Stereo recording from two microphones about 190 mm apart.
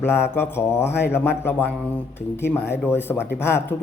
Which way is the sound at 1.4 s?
10° left (ahead or behind).